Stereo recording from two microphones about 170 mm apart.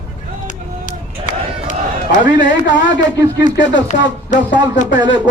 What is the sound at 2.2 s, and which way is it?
Speech, 90° left.